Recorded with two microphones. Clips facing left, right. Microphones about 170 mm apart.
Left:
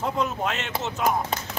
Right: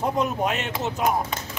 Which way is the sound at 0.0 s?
15° right (ahead or behind).